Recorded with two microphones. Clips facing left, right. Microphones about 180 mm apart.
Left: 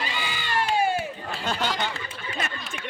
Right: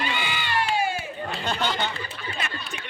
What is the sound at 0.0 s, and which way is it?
Crowd, 40° left (ahead or behind).